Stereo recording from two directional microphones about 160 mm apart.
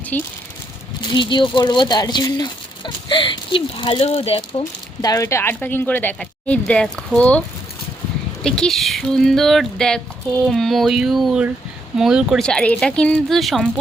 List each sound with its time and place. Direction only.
0.1 s speech: 10° left (ahead or behind)
1.0 s speech: 30° left (ahead or behind)
5.0 s speech: 20° left (ahead or behind)
8.4 s speech: 5° left (ahead or behind)